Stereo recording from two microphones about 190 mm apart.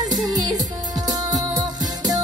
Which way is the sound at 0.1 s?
20° right (ahead or behind).